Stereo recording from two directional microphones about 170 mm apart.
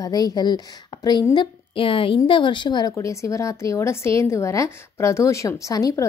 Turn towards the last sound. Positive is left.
turn(degrees=20)  # may be behind; listen again after turning